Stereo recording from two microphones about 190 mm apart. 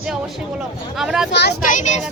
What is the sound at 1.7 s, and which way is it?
Speech, 40° left (ahead or behind).